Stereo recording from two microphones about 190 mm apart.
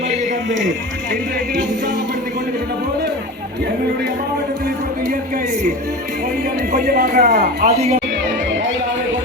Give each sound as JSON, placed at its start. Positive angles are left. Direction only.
{"t": 6.7, "sound": "speech", "side_deg": -55}